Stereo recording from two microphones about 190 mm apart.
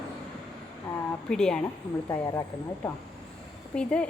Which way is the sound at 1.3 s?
5° left (ahead or behind).